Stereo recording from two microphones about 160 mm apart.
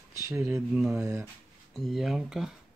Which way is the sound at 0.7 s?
5° right (ahead or behind).